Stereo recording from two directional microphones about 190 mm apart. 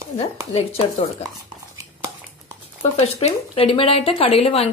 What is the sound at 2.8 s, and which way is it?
Speech, 35° left (ahead or behind).